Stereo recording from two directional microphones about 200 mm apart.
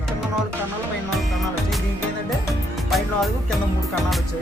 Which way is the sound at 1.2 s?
Centre (ahead or behind).